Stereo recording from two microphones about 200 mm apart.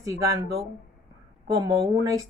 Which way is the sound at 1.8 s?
15° right (ahead or behind).